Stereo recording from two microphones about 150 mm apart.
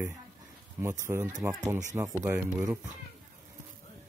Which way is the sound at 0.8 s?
20° right (ahead or behind).